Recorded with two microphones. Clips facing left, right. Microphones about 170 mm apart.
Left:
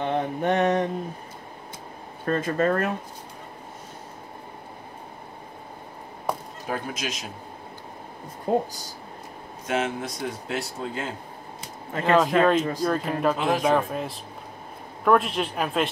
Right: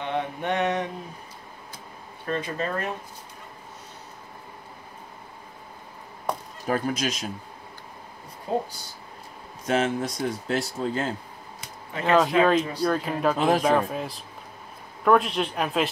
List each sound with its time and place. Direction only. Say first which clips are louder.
0.0 s mantra: left 4 dB; 40° left (ahead or behind)
2.2 s speech: left 6 dB; 45° left (ahead or behind)
6.7 s speech: right 5 dB; 40° right (ahead or behind)
8.5 s speech: left 4 dB; 50° left (ahead or behind)
9.7 s speech: right 3 dB; 35° right (ahead or behind)
12.0 s speech: even; centre (ahead or behind)
13.4 s speech: right 2 dB; 40° right (ahead or behind)
13.7 s speech: even; centre (ahead or behind)